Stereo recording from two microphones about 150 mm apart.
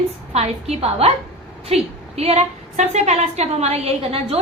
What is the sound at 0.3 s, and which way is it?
A woman's voice, 45° right (ahead or behind).